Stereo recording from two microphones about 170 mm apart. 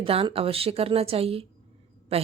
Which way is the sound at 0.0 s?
35° right (ahead or behind).